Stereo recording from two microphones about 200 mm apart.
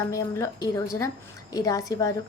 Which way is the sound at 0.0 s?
15° left (ahead or behind).